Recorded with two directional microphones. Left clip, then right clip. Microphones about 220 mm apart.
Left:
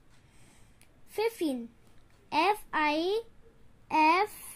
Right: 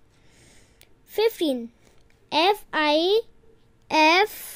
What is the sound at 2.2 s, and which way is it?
Speech, 40° right (ahead or behind).